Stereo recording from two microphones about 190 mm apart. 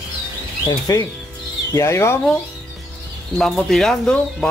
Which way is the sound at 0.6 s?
20° left (ahead or behind).